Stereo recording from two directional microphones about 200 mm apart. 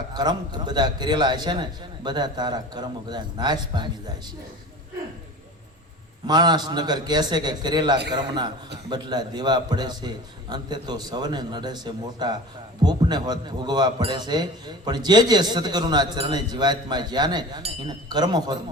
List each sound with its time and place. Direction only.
0.1 s speech: 20° right (ahead or behind)
6.2 s speech: 20° right (ahead or behind)